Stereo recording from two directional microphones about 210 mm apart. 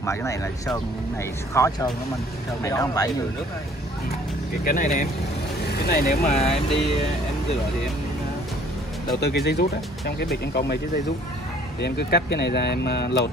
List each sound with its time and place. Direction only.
0.0 s speech: 15° left (ahead or behind)
1.5 s speech: 15° left (ahead or behind)
4.6 s speech: 40° left (ahead or behind)
5.7 s vehicle: 50° left (ahead or behind)
6.0 s speech: 30° left (ahead or behind)
9.2 s speech: 50° left (ahead or behind)
11.8 s speech: 55° left (ahead or behind)